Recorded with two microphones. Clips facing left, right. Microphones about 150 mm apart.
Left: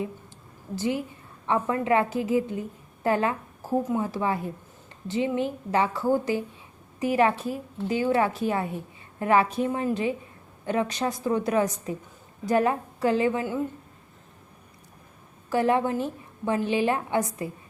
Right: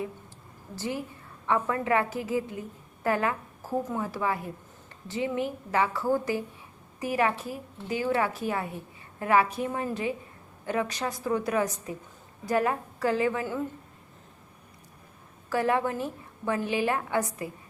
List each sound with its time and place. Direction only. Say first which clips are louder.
0.8 s a woman's voice: left 5 dB; 20° left (ahead or behind)
15.4 s a woman's voice: left 3 dB; 25° left (ahead or behind)